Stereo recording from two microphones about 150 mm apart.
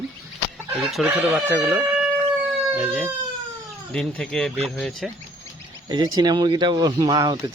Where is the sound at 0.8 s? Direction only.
Centre (ahead or behind).